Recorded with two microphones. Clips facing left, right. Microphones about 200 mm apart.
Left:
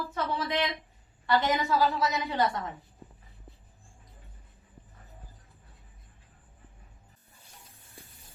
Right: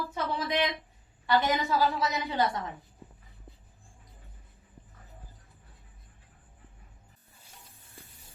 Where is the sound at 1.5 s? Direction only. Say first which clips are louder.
Left 1 dB; 15° right (ahead or behind).